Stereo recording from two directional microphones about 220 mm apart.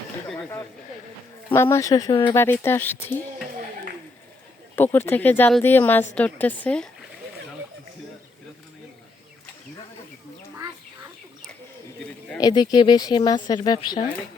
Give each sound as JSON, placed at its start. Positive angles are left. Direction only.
{"t": 0.3, "sound": "a sound", "side_deg": 10}
{"t": 1.5, "sound": "speech", "side_deg": 10}
{"t": 2.4, "sound": "speech", "side_deg": 10}
{"t": 4.7, "sound": "speech", "side_deg": 10}
{"t": 12.4, "sound": "speech", "side_deg": 20}